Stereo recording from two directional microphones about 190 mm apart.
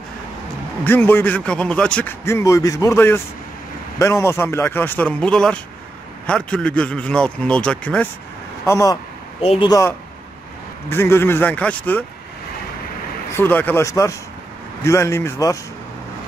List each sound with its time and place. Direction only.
0.8 s a man's voice: 10° left (ahead or behind)
8.6 s a man's voice: 15° left (ahead or behind)
9.4 s speech: 30° left (ahead or behind)
9.7 s a man's voice: 15° left (ahead or behind)
13.3 s a man's voice: 10° left (ahead or behind)